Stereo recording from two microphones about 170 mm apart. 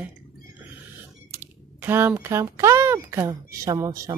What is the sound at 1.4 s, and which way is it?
Speech, 10° right (ahead or behind).